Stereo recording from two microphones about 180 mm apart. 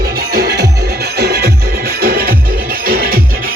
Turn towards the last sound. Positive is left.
turn(degrees=-55)  # may be behind; listen again after turning